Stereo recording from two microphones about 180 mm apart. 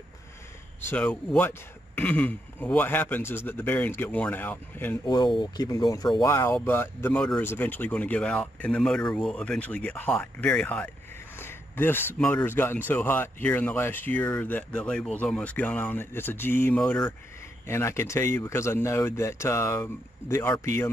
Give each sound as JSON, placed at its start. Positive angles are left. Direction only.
{"t": 0.7, "sound": "speech", "side_deg": 10}
{"t": 5.0, "sound": "speech", "side_deg": 25}